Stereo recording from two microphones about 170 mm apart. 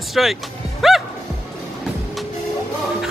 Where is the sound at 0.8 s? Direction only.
Centre (ahead or behind).